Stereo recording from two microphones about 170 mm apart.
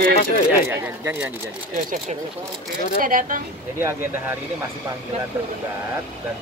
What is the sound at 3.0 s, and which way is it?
Speech, 50° right (ahead or behind).